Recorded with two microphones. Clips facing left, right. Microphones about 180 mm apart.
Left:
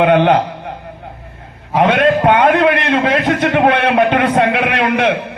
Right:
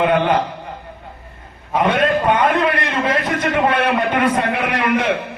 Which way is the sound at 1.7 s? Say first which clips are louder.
Left 4 dB; 70° left (ahead or behind).